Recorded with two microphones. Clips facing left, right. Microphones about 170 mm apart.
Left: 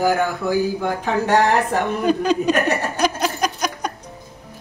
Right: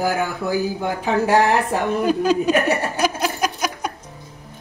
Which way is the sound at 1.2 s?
5° right (ahead or behind).